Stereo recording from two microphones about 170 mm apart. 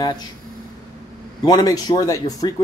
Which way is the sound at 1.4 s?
20° left (ahead or behind).